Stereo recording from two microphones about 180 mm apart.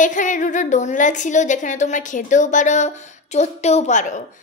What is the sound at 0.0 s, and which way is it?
A woman's voice, 45° left (ahead or behind).